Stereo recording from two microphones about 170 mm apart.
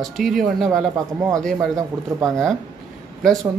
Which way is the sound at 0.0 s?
Centre (ahead or behind).